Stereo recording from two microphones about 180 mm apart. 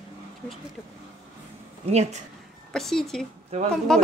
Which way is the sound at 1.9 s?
40° right (ahead or behind).